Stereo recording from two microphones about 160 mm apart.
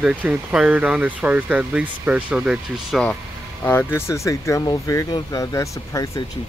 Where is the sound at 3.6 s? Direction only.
10° left (ahead or behind).